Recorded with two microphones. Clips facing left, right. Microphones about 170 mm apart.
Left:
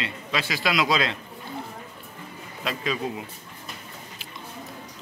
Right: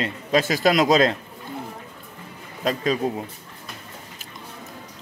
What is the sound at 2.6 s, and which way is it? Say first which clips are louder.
Speech: right 6 dB; 40° right (ahead or behind).